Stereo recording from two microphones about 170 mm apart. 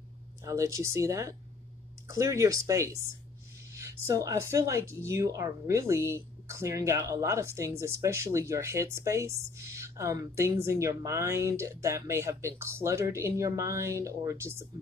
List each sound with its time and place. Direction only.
0.4 s speech: 15° right (ahead or behind)